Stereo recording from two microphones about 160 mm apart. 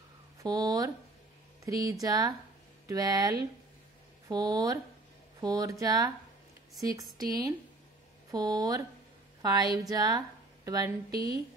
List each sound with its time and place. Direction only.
0.4 s speech: 25° right (ahead or behind)
11.1 s a woman's voice: 75° right (ahead or behind)